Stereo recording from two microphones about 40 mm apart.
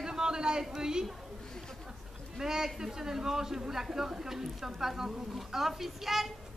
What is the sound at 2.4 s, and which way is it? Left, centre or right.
Speech, centre.